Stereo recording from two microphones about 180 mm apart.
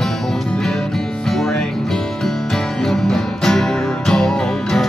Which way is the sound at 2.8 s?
Centre (ahead or behind).